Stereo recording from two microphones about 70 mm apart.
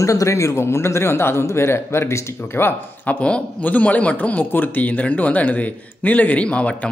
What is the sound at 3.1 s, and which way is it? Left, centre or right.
A man's voice, centre.